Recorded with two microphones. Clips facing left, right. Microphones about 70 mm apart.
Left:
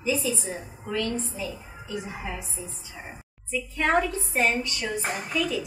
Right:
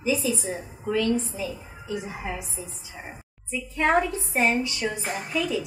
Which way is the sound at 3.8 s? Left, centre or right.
Centre.